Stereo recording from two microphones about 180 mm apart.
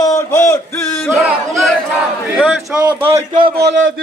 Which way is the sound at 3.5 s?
80° right.